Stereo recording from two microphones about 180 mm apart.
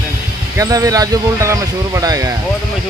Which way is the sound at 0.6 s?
20° right (ahead or behind).